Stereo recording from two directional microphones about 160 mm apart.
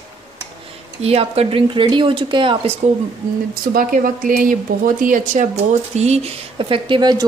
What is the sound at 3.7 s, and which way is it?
A woman's voice, 60° right (ahead or behind).